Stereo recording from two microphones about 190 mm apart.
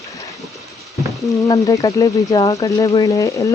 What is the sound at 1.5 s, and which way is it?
Speech, 20° left (ahead or behind).